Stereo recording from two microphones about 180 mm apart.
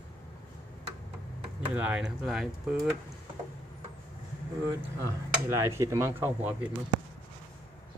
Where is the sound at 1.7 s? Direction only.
10° right (ahead or behind).